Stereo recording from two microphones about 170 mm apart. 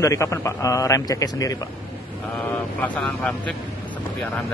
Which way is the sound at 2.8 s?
5° left (ahead or behind).